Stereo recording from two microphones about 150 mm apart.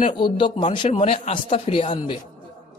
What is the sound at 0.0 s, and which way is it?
A man's voice, 35° left (ahead or behind).